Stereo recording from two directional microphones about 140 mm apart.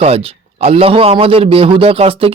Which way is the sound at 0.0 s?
45° right (ahead or behind).